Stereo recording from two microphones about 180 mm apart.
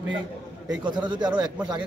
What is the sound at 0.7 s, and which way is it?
A man's voice, 25° right (ahead or behind).